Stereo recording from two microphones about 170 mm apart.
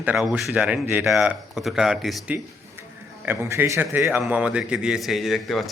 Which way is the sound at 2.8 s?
15° right (ahead or behind).